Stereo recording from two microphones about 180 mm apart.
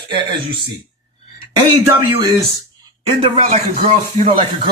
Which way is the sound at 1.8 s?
20° right (ahead or behind).